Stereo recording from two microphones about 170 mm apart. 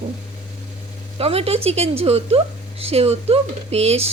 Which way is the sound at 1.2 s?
35° right (ahead or behind).